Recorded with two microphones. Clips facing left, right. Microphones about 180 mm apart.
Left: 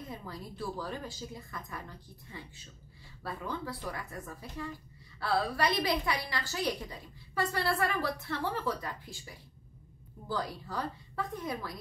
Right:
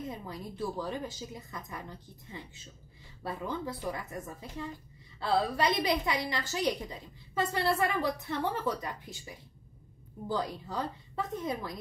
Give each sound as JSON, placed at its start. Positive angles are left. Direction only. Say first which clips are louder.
{"t": 0.1, "sound": "a woman's voice", "louder": "right 2 dB", "side_deg": -20}